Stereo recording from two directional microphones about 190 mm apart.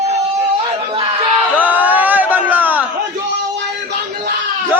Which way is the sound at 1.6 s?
10° right (ahead or behind).